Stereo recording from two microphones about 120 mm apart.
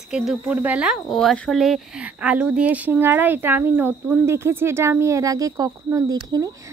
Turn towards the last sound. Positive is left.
turn(degrees=-30)  # may be behind; listen again after turning